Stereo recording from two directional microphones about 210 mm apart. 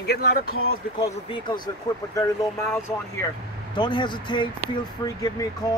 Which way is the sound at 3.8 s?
20° left (ahead or behind).